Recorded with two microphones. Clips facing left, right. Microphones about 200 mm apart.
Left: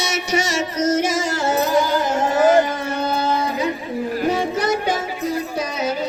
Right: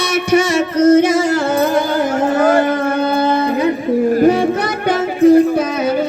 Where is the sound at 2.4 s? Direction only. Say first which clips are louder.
Right 1 dB; 60° right (ahead or behind).